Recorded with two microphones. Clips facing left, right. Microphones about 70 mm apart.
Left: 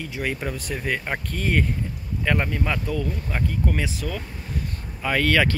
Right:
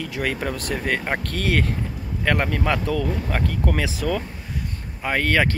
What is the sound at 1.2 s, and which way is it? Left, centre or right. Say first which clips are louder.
Speech: right 1 dB; right.